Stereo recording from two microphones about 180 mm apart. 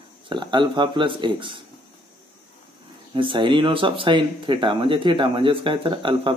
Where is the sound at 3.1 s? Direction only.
25° right (ahead or behind).